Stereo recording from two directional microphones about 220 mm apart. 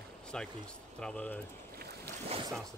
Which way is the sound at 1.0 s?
5° left (ahead or behind).